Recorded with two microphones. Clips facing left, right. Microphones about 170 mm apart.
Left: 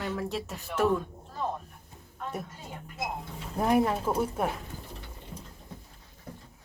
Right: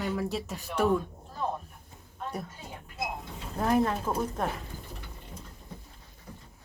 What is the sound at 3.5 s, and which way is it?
Speech, 10° left (ahead or behind).